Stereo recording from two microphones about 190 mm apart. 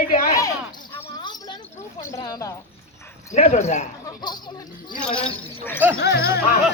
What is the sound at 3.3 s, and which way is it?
Speech, 40° left (ahead or behind).